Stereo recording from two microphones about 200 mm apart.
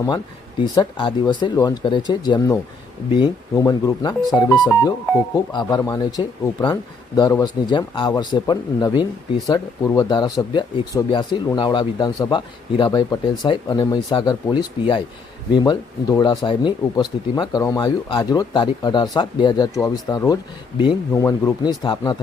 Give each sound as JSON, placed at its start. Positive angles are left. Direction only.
{"t": 0.6, "sound": "speech", "side_deg": 25}